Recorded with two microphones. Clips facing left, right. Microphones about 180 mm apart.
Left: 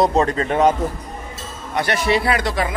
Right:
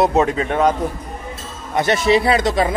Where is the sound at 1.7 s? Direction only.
25° right (ahead or behind).